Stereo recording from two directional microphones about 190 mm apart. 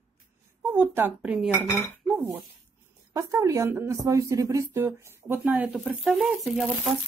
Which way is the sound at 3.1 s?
15° right (ahead or behind).